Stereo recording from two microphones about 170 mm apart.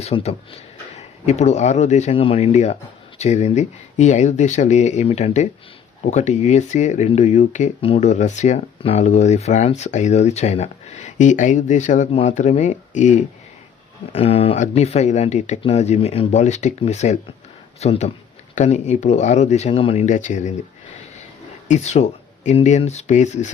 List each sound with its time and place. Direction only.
0.0 s speech: 40° left (ahead or behind)
21.7 s speech: 40° left (ahead or behind)